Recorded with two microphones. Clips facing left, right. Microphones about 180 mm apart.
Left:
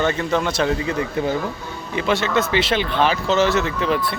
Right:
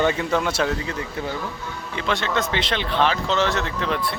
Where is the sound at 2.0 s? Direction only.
5° left (ahead or behind).